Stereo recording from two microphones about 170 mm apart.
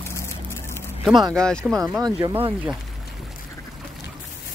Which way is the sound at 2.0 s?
20° right (ahead or behind).